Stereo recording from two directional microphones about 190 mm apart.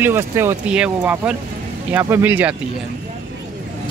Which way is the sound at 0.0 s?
10° right (ahead or behind).